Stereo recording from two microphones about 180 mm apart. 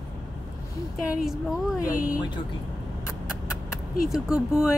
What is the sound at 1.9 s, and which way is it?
Speech, 50° left (ahead or behind).